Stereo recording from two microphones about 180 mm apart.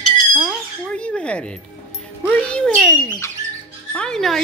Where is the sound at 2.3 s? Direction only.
5° left (ahead or behind).